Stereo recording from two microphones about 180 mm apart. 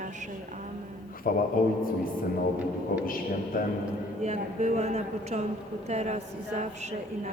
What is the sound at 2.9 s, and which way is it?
Speech, 55° left (ahead or behind).